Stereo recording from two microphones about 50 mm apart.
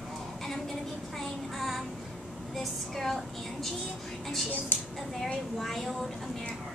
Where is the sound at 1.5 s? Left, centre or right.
Centre.